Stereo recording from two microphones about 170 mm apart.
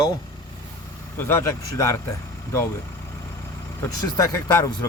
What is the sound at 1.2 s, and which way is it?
Speech, 15° left (ahead or behind).